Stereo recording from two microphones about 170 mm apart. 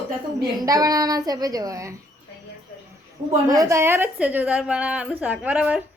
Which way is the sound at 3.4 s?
20° right (ahead or behind).